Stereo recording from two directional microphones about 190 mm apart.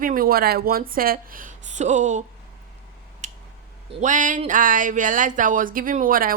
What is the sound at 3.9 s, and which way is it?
Speech, 40° right (ahead or behind).